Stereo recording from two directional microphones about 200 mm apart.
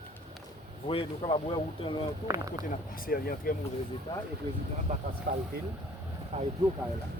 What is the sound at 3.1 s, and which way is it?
Speech, 45° left (ahead or behind).